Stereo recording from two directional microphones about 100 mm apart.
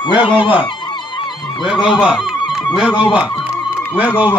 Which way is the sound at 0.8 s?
55° left (ahead or behind).